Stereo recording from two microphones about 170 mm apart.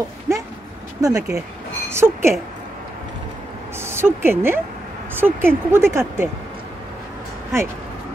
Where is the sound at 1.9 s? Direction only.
15° right (ahead or behind).